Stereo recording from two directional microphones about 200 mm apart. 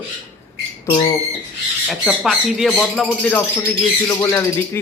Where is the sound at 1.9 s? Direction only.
Centre (ahead or behind).